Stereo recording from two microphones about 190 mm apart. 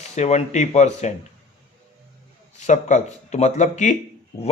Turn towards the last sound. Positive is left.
turn(degrees=40)  # may be behind; listen again after turning